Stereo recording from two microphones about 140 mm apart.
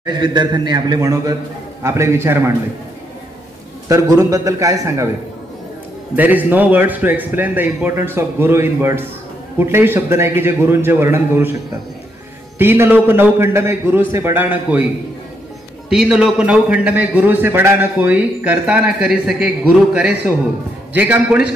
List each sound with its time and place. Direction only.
0.0 s a man's voice: 30° right (ahead or behind)
3.9 s a man's voice: 25° right (ahead or behind)
6.1 s a man's voice: 10° right (ahead or behind)
12.5 s a man's voice: 15° right (ahead or behind)
15.9 s a man's voice: 5° right (ahead or behind)